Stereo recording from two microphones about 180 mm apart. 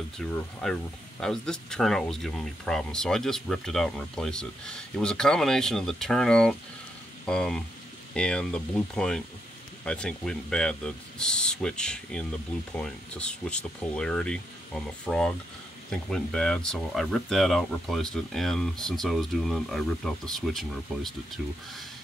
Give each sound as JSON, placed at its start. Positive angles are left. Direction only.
{"t": 0.2, "sound": "speech", "side_deg": 5}